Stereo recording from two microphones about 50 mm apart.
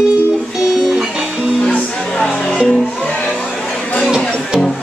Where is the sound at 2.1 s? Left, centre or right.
Centre.